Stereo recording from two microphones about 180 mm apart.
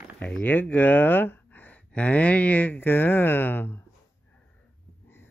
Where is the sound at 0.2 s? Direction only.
10° left (ahead or behind).